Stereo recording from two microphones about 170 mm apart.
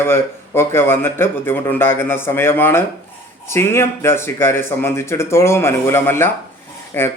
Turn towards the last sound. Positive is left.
turn(degrees=15)  # may be behind; listen again after turning